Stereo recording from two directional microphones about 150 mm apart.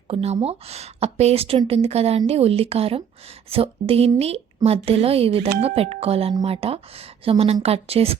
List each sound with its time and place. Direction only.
0.1 s a woman's voice: 45° right (ahead or behind)